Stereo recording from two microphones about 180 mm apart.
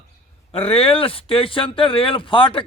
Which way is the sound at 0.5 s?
30° left (ahead or behind).